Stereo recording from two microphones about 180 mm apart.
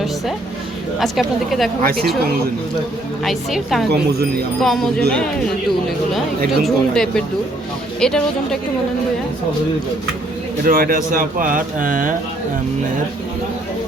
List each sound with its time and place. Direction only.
0.9 s speech: centre (ahead or behind)
1.8 s speech: 55° right (ahead or behind)
3.2 s speech: centre (ahead or behind)
3.9 s speech: 60° right (ahead or behind)
4.6 s speech: centre (ahead or behind)
6.7 s speech: 5° left (ahead or behind)
10.6 s speech: 50° right (ahead or behind)